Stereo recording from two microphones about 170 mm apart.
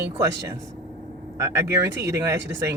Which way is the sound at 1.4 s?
15° right (ahead or behind).